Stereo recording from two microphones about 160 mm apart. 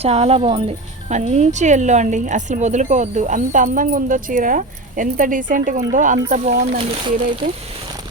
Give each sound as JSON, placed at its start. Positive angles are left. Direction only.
{"t": 0.0, "sound": "speech", "side_deg": -40}
{"t": 1.0, "sound": "speech", "side_deg": -45}
{"t": 6.7, "sound": "speech", "side_deg": -35}